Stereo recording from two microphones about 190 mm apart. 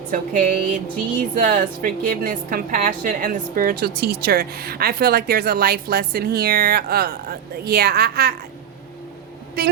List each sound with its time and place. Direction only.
0.1 s a woman's voice: 45° right (ahead or behind)
9.6 s a woman's voice: 55° right (ahead or behind)